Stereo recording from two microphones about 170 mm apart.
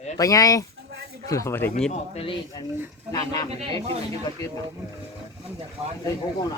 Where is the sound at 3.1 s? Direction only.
20° left (ahead or behind).